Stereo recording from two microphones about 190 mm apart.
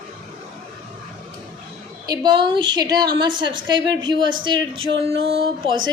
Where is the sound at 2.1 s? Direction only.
25° right (ahead or behind).